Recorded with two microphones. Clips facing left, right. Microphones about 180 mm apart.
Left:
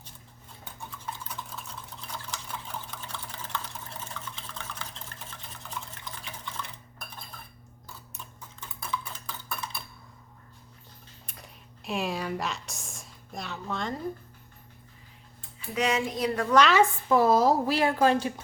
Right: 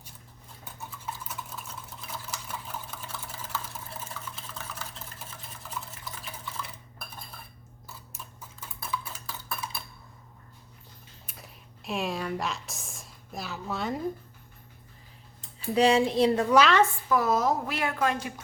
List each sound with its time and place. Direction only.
0.6 s typing: 5° right (ahead or behind)
2.0 s a sound: 5° right (ahead or behind)
5.9 s stir: 5° right (ahead or behind)
8.1 s dishes: 5° right (ahead or behind)
11.3 s a sound: centre (ahead or behind)
15.7 s speech: 30° right (ahead or behind)
16.5 s a woman's voice: 5° right (ahead or behind)
17.1 s speech: 30° left (ahead or behind)